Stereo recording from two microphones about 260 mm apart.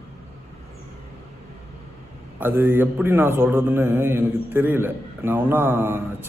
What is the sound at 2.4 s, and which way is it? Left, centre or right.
Speech, centre.